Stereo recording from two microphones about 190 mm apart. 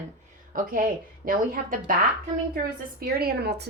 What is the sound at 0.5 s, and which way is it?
Speech, 50° right (ahead or behind).